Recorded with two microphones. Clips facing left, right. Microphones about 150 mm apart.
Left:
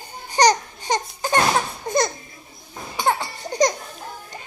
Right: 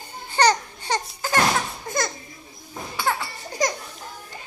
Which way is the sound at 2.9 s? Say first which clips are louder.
Left 4 dB; 25° left (ahead or behind).